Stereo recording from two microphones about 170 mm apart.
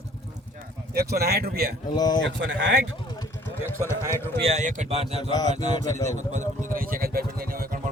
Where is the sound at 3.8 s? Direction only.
15° left (ahead or behind).